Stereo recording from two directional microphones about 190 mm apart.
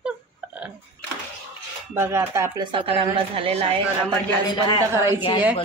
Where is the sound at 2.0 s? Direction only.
15° right (ahead or behind); by 3.8 s 30° right (ahead or behind).